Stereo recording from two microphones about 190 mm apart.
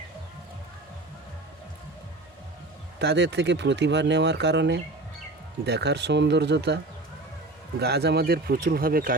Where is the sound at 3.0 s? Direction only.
65° right (ahead or behind); by 9.1 s 50° right (ahead or behind).